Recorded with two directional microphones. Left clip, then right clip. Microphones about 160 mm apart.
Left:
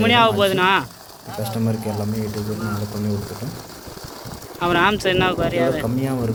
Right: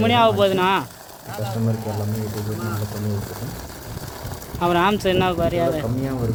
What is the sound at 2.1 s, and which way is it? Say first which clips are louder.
Speech: left 2 dB; 45° right (ahead or behind).